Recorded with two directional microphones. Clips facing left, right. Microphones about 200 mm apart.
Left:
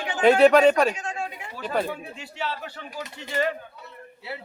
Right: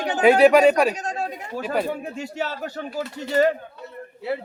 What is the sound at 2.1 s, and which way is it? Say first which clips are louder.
Speech: right 4 dB; 45° right (ahead or behind).